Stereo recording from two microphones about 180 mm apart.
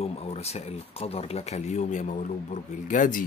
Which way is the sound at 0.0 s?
35° left (ahead or behind).